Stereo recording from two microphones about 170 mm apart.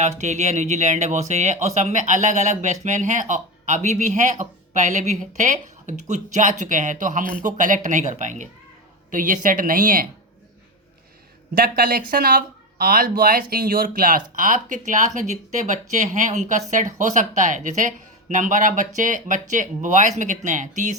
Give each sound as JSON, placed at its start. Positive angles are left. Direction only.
{"t": 0.2, "sound": "speech", "side_deg": -45}
{"t": 11.5, "sound": "speech", "side_deg": -60}